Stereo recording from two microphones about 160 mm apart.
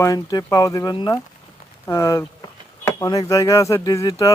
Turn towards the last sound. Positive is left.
turn(degrees=20)  # may be behind; listen again after turning